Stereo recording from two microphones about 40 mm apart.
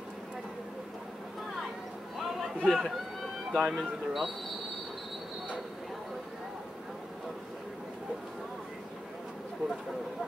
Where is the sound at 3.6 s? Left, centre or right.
Centre.